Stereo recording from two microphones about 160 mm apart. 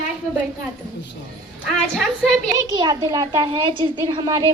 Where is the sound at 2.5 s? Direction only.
25° right (ahead or behind).